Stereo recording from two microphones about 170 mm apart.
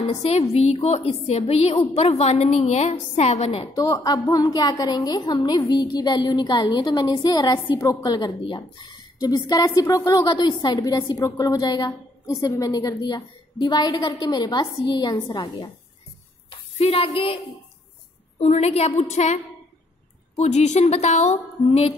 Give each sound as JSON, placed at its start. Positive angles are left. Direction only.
{"t": 0.0, "sound": "a woman's voice", "side_deg": 35}
{"t": 3.7, "sound": "a woman's voice", "side_deg": 20}
{"t": 16.4, "sound": "a sound", "side_deg": 35}
{"t": 18.4, "sound": "a woman's voice", "side_deg": 40}